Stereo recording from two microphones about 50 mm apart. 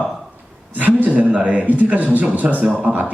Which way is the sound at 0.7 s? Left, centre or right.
Right.